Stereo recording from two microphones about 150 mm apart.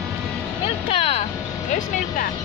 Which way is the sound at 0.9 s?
45° left (ahead or behind).